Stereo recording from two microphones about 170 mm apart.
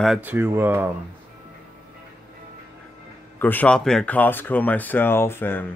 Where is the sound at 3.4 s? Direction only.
10° left (ahead or behind).